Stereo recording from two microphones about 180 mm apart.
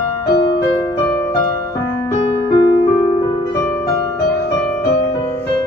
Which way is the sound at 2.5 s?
20° left (ahead or behind).